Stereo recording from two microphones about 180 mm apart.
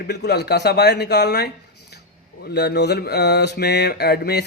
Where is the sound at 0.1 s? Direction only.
65° left (ahead or behind).